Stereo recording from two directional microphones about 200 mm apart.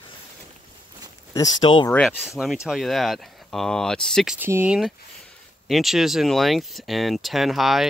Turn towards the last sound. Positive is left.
turn(degrees=0)  # may be behind; listen again after turning